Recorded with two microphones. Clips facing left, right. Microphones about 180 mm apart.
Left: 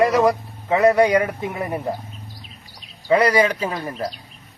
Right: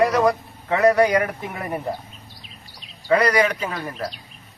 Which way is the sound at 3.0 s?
25° left (ahead or behind).